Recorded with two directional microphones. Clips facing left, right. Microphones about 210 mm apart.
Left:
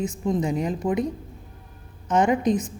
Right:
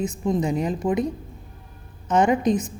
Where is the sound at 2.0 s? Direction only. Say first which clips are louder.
Right 1 dB; 20° right (ahead or behind).